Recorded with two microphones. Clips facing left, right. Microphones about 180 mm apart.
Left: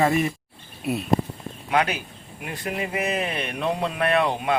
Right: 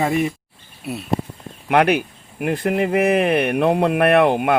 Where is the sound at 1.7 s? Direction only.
65° right (ahead or behind).